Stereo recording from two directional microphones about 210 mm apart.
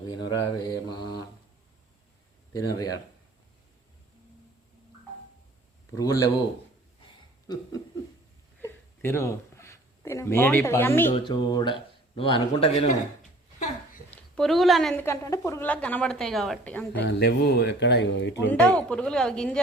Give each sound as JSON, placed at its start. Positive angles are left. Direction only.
{"t": 0.1, "sound": "speech", "side_deg": 20}
{"t": 6.0, "sound": "a woman's voice", "side_deg": 15}
{"t": 7.4, "sound": "chuckle", "side_deg": 20}
{"t": 8.6, "sound": "a sound", "side_deg": 10}
{"t": 11.1, "sound": "speech", "side_deg": 20}
{"t": 13.6, "sound": "a sound", "side_deg": 35}
{"t": 14.1, "sound": "a woman's voice", "side_deg": 0}
{"t": 15.0, "sound": "a woman's voice", "side_deg": 15}
{"t": 17.1, "sound": "speech", "side_deg": 55}
{"t": 18.5, "sound": "speech", "side_deg": 5}